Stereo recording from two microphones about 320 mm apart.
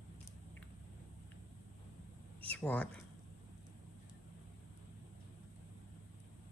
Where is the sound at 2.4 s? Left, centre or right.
Centre.